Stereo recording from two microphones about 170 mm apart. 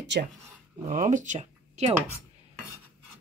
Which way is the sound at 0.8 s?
45° right (ahead or behind).